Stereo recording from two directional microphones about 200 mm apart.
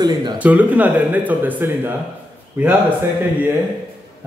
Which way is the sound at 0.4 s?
5° right (ahead or behind).